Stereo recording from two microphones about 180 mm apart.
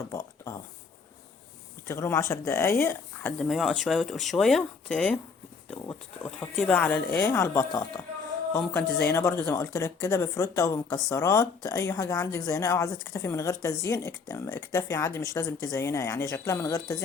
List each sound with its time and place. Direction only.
0.1 s a sound: 15° left (ahead or behind)
1.9 s speech: 15° left (ahead or behind)
9.0 s speech: 15° left (ahead or behind)